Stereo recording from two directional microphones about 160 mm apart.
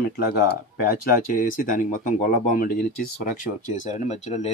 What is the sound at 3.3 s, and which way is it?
Speech, 55° left (ahead or behind).